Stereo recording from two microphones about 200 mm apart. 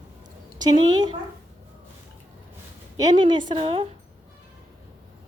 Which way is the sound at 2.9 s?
20° right (ahead or behind).